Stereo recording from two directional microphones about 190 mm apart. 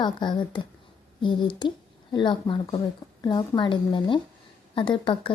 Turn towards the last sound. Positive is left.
turn(degrees=25)  # may be behind; listen again after turning